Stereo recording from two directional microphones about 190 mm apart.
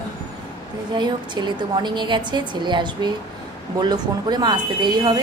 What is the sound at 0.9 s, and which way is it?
Speech, 25° right (ahead or behind).